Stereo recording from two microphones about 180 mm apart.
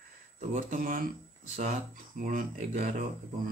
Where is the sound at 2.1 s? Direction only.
50° right (ahead or behind).